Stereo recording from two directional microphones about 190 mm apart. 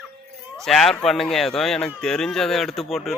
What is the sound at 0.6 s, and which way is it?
Speech, centre (ahead or behind).